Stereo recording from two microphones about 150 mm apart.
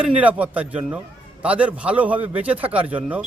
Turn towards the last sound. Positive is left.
turn(degrees=-10)  # may be behind; listen again after turning